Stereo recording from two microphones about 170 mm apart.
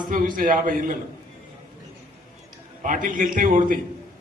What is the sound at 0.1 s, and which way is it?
Speech, 55° right (ahead or behind).